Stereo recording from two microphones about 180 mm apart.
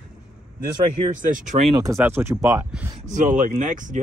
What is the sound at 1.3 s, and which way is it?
Speech, 45° right (ahead or behind).